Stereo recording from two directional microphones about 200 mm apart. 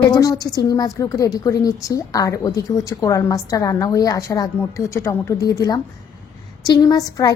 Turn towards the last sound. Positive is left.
turn(degrees=20)  # may be behind; listen again after turning